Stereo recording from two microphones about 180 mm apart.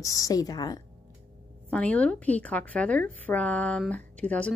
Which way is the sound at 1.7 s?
10° left (ahead or behind).